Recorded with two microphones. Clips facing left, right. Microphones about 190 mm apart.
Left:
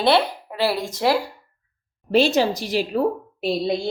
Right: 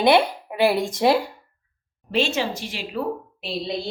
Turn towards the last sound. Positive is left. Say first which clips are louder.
# left 7 dB
turn(degrees=45)  # may be behind; listen again after turning